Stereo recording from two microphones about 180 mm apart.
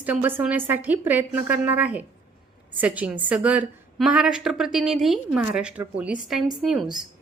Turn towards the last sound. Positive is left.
turn(degrees=0)  # may be behind; listen again after turning